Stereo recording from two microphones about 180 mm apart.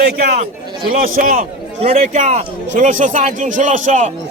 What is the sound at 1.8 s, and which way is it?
A man's voice, 40° right (ahead or behind).